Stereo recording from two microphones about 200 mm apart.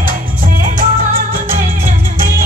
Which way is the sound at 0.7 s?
45° right (ahead or behind).